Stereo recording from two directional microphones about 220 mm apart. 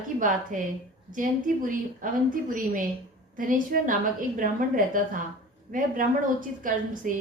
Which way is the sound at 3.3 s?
40° right (ahead or behind).